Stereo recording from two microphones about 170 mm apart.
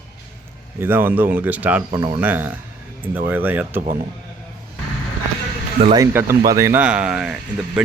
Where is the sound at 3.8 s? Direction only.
55° right (ahead or behind).